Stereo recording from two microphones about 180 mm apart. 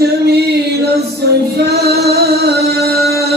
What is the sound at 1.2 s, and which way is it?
Music, 65° right (ahead or behind).